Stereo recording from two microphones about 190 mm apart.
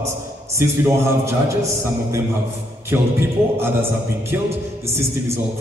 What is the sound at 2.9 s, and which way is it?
Speech, 10° right (ahead or behind).